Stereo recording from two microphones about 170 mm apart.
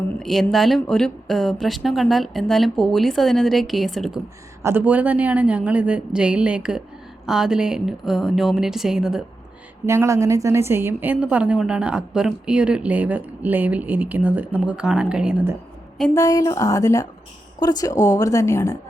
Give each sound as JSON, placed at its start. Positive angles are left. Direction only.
{"t": 0.2, "sound": "speech", "side_deg": 0}
{"t": 4.6, "sound": "a woman's voice", "side_deg": -10}
{"t": 9.8, "sound": "a woman's voice", "side_deg": -15}
{"t": 16.1, "sound": "a woman's voice", "side_deg": 20}